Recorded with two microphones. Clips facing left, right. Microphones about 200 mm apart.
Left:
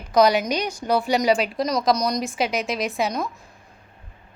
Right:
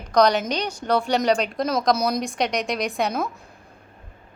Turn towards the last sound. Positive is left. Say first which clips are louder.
# even
turn(degrees=0)  # may be behind; listen again after turning